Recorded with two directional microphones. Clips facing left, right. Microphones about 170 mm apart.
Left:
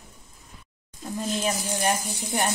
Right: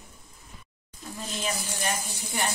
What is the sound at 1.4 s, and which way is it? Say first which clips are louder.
Speech: left 4 dB; 45° left (ahead or behind).